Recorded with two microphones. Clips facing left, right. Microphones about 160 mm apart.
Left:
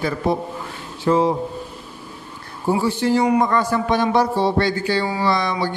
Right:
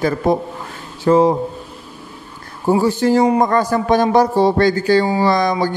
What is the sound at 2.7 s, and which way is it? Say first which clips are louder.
Speech: right 4 dB; 45° right (ahead or behind).